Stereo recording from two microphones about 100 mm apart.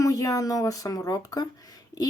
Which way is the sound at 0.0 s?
35° left (ahead or behind).